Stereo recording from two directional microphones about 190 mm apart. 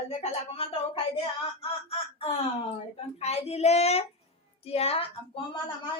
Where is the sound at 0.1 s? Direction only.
30° left (ahead or behind).